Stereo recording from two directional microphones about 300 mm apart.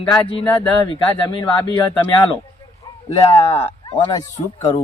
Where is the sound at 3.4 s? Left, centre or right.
Centre.